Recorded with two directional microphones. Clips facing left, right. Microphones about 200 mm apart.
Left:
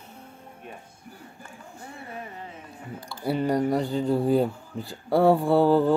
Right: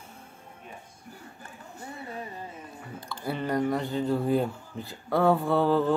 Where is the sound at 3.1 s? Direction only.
35° left (ahead or behind).